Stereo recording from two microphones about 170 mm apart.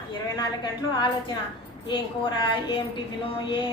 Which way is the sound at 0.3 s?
25° left (ahead or behind).